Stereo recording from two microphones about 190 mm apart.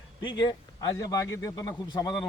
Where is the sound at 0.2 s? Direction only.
25° left (ahead or behind).